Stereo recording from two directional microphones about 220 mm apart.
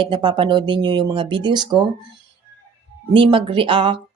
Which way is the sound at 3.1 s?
25° right (ahead or behind).